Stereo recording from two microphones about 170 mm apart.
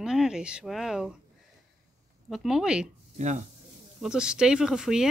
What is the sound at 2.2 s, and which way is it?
Speech, centre (ahead or behind).